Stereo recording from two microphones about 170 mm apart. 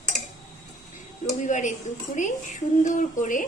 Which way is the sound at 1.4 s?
45° left (ahead or behind).